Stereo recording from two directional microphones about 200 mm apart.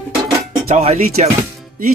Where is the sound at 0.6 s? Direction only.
35° right (ahead or behind).